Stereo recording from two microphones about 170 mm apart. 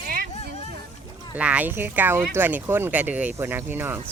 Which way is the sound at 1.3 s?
10° right (ahead or behind).